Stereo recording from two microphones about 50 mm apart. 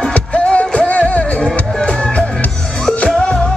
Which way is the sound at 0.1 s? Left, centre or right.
Left.